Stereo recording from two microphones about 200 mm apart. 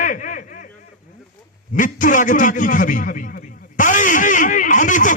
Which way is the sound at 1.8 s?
40° left (ahead or behind).